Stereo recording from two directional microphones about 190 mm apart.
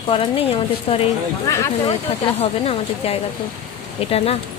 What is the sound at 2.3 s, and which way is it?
Speech, 30° left (ahead or behind).